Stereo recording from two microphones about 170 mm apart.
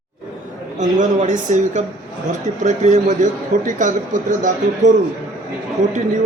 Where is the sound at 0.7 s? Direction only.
45° right (ahead or behind).